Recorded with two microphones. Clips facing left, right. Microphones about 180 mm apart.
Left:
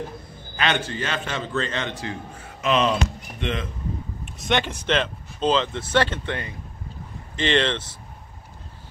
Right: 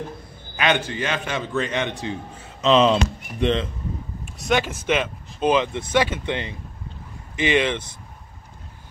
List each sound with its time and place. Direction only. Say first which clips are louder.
0.6 s a man's voice: right 3 dB; 10° right (ahead or behind)
4.3 s a man's voice: right 2 dB; centre (ahead or behind)
7.3 s a man's voice: right 1 dB; 10° right (ahead or behind)